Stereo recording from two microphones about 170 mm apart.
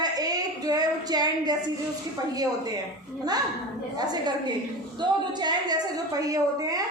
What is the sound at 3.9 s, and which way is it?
A woman's voice, 25° right (ahead or behind).